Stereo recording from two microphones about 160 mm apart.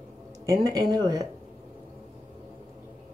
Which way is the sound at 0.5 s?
25° right (ahead or behind).